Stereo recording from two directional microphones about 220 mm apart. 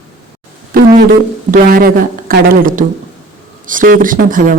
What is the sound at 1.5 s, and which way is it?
A woman's voice, 40° right (ahead or behind).